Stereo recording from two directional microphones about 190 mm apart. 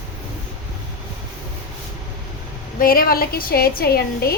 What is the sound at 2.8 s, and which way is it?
A woman's voice, 50° left (ahead or behind).